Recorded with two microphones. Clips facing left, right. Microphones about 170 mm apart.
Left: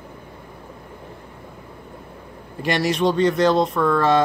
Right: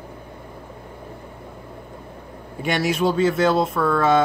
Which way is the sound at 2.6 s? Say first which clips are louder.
Left 1 dB; centre (ahead or behind).